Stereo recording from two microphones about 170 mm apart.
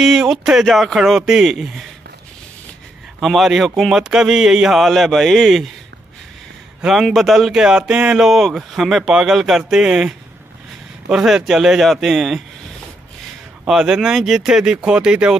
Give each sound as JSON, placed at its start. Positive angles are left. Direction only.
{"t": 0.0, "sound": "speech", "side_deg": -5}
{"t": 3.2, "sound": "speech", "side_deg": 0}
{"t": 6.8, "sound": "speech", "side_deg": 0}
{"t": 13.7, "sound": "speech", "side_deg": -5}